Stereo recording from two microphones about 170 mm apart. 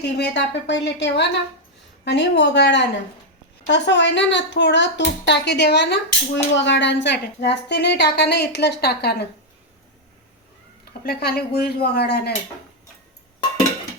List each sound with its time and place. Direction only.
0.2 s speech: 90° left; by 9.2 s 75° left (ahead or behind)
11.0 s speech: 65° left (ahead or behind)